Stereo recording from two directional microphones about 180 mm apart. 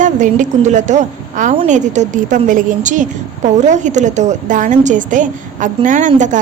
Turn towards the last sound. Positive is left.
turn(degrees=-45)  # may be behind; listen again after turning